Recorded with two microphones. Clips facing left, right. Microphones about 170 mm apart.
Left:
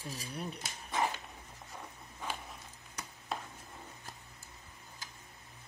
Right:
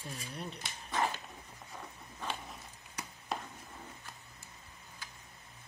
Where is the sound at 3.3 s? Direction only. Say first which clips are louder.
Right 1 dB; centre (ahead or behind).